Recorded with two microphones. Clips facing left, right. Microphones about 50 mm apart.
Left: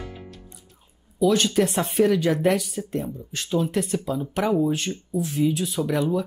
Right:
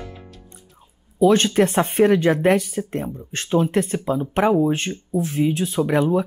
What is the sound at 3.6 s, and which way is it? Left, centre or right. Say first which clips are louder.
Speech: right 4 dB; right.